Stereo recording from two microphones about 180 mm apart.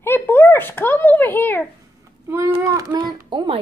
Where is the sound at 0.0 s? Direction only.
10° left (ahead or behind).